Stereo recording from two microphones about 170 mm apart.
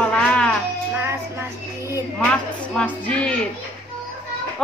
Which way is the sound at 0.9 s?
15° right (ahead or behind).